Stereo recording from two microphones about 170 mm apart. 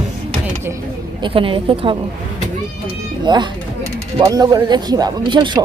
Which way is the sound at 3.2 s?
25° right (ahead or behind).